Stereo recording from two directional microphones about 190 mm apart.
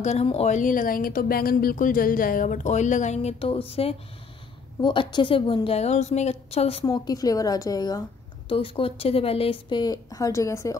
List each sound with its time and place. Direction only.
0.0 s speech: 35° left (ahead or behind)
6.9 s a woman's voice: 20° left (ahead or behind)